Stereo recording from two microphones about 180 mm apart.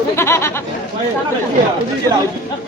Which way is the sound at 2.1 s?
15° left (ahead or behind).